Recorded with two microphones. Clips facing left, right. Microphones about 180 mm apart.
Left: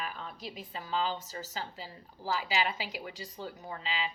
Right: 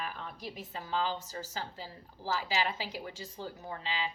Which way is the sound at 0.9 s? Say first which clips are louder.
Left 1 dB; 15° left (ahead or behind).